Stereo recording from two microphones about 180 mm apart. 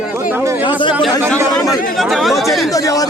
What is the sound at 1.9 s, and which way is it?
Speech, centre (ahead or behind).